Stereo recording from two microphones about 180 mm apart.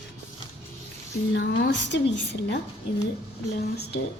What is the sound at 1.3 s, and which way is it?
Speech, 80° left.